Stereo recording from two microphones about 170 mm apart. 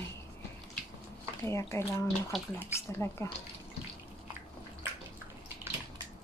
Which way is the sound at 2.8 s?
15° left (ahead or behind).